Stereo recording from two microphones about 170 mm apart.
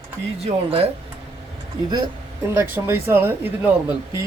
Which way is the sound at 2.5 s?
15° right (ahead or behind).